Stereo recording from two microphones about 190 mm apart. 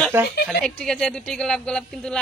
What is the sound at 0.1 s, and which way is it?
Speech, 10° right (ahead or behind).